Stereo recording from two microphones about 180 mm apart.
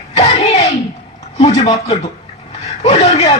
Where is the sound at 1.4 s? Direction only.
35° left (ahead or behind).